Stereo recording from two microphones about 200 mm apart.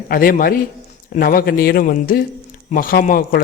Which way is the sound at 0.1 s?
45° left (ahead or behind).